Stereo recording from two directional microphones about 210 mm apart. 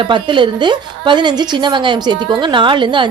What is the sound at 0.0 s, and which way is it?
A woman's voice, 20° right (ahead or behind).